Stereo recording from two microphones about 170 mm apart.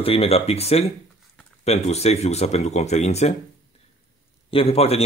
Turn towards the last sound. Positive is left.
turn(degrees=35)  # may be behind; listen again after turning